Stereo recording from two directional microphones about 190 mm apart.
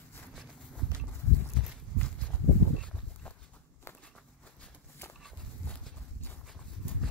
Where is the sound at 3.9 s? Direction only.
15° left (ahead or behind).